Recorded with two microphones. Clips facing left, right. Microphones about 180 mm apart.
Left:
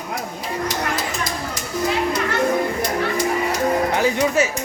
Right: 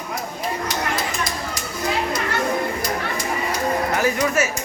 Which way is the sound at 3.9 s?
20° left (ahead or behind).